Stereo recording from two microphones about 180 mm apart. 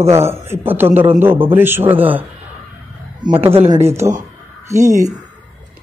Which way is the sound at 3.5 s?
35° right (ahead or behind).